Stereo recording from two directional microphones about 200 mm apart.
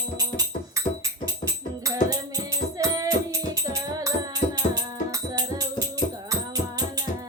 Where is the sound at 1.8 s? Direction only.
15° right (ahead or behind).